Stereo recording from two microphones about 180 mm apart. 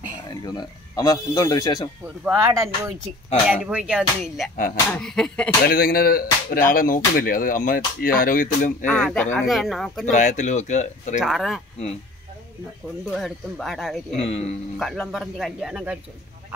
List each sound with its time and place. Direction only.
0.4 s speech: 20° left (ahead or behind)
2.2 s speech: 15° right (ahead or behind); by 5.5 s 5° left (ahead or behind)
5.7 s speech: 55° left (ahead or behind)
8.8 s speech: 5° left (ahead or behind)
10.1 s speech: 40° left (ahead or behind)
11.1 s speech: centre (ahead or behind)
13.1 s speech: centre (ahead or behind)
14.1 s speech: 35° left (ahead or behind)
14.8 s speech: centre (ahead or behind)